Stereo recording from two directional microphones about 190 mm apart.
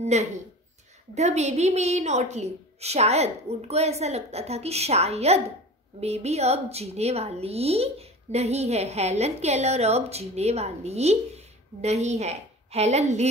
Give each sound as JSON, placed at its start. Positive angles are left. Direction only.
{"t": 0.0, "sound": "a woman's voice", "side_deg": -35}